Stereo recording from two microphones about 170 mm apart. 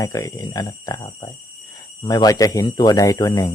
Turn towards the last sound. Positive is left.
turn(degrees=20)  # may be behind; listen again after turning